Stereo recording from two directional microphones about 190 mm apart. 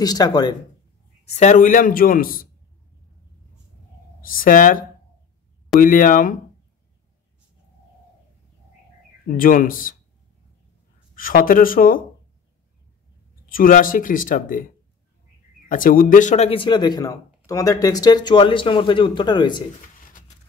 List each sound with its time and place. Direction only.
0.0 s speech: 20° left (ahead or behind)
1.2 s a man's voice: 35° left (ahead or behind)
4.2 s a man's voice: 50° left (ahead or behind)
9.4 s a man's voice: 45° left (ahead or behind)
11.1 s a man's voice: 45° left (ahead or behind)
13.5 s a man's voice: 45° left (ahead or behind)
15.7 s speech: 45° left (ahead or behind); by 19.6 s 25° left (ahead or behind)